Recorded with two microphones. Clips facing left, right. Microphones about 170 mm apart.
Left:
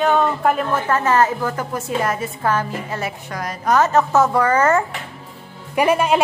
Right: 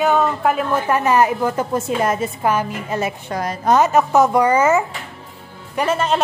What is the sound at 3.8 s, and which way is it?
Speech, 15° right (ahead or behind).